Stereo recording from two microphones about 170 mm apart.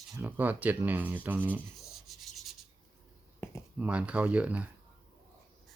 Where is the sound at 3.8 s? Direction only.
10° right (ahead or behind).